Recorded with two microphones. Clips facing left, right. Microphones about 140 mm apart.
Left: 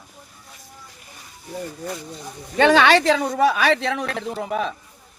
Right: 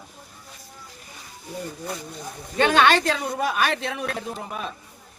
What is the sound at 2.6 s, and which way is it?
A woman's voice, 80° left.